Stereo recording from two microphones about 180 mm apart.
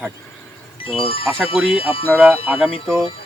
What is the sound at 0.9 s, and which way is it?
Speech, 30° left (ahead or behind).